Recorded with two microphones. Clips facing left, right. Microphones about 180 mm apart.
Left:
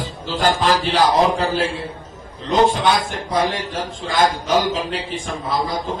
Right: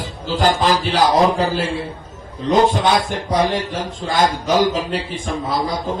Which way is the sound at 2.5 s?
45° right (ahead or behind).